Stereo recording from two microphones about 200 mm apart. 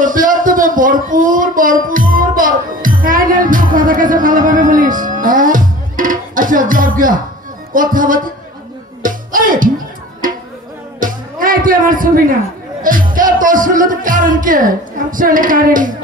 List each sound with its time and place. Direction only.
0.0 s speech: 45° right (ahead or behind)
9.0 s music: 45° right (ahead or behind)
11.0 s music: 45° right (ahead or behind)